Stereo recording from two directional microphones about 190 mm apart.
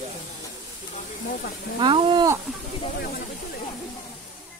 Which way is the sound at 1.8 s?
25° right (ahead or behind).